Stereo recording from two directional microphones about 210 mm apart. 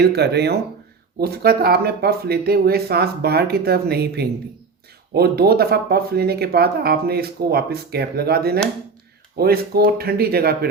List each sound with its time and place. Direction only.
0.0 s speech: 50° right (ahead or behind)